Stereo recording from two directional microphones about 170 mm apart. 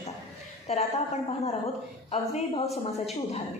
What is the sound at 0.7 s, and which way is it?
Speech, 35° left (ahead or behind).